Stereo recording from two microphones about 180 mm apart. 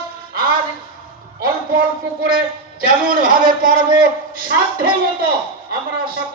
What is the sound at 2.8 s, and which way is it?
Speech, 50° right (ahead or behind).